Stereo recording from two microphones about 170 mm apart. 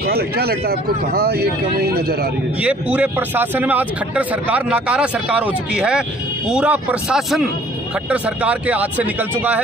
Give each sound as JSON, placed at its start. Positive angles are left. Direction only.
{"t": 0.0, "sound": "speech", "side_deg": -65}
{"t": 2.6, "sound": "speech", "side_deg": -10}